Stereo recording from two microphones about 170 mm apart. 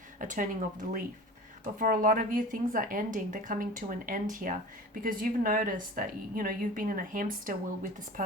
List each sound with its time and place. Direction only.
0.2 s a woman's voice: 50° right (ahead or behind)